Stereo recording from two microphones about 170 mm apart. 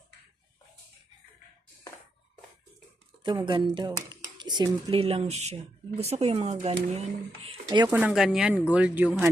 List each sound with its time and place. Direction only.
3.2 s speech: 30° right (ahead or behind)
7.4 s speech: 30° right (ahead or behind)
7.9 s speech: 10° right (ahead or behind)